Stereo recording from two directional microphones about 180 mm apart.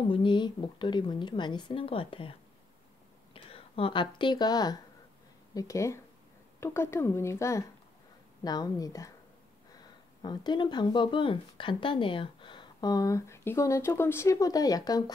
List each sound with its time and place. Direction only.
0.1 s speech: 25° left (ahead or behind)
3.3 s speech: 30° left (ahead or behind)
10.2 s speech: 25° left (ahead or behind)